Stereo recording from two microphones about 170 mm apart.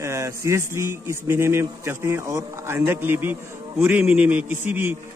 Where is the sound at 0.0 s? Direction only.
15° right (ahead or behind).